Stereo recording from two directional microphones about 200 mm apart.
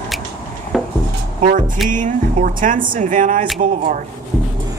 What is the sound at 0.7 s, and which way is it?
Dishes, centre (ahead or behind).